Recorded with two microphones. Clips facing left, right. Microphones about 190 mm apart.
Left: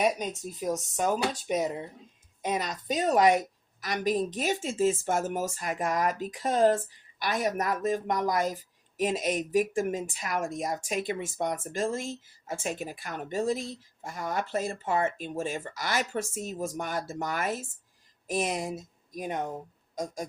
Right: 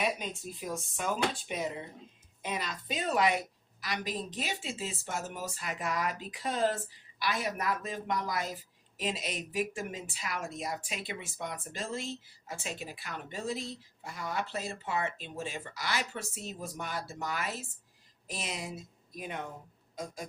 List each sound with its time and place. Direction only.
0.0 s a woman's voice: 45° left (ahead or behind)